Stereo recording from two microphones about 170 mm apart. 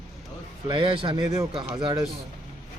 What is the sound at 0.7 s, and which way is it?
A man's voice, 30° right (ahead or behind).